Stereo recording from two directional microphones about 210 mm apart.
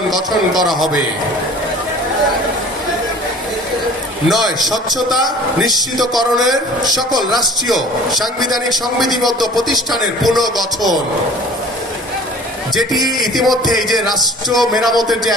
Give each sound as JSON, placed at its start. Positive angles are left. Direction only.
{"t": 0.1, "sound": "a man's voice", "side_deg": 0}
{"t": 4.3, "sound": "a man's voice", "side_deg": 0}
{"t": 5.5, "sound": "a man's voice", "side_deg": 0}
{"t": 13.0, "sound": "a sound", "side_deg": -20}
{"t": 13.3, "sound": "a man's voice", "side_deg": 0}